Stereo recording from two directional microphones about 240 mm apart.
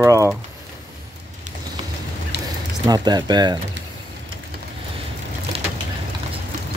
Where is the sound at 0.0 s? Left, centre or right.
Centre.